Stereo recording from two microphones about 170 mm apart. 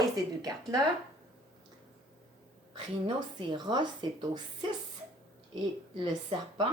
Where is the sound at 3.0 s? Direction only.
25° right (ahead or behind).